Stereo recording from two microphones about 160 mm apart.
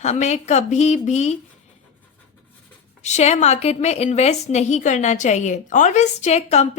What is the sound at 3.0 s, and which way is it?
A woman's voice, 45° left (ahead or behind).